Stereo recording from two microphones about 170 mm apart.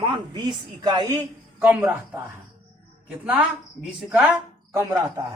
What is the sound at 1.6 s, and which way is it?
Speech, 10° right (ahead or behind).